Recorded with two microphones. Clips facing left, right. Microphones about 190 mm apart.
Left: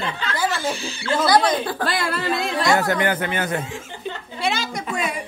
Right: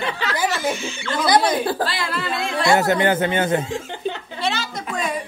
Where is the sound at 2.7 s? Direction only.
25° right (ahead or behind).